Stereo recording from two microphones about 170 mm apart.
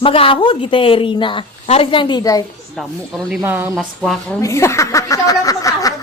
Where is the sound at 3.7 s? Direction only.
Centre (ahead or behind).